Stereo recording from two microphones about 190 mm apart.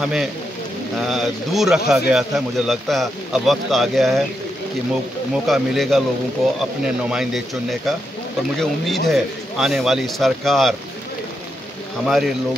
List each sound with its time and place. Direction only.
0.0 s speech: centre (ahead or behind)
5.5 s speech: centre (ahead or behind)
12.1 s speech: centre (ahead or behind)